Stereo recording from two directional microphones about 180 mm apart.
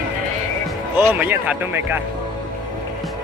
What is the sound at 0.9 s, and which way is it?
Speech, 10° right (ahead or behind).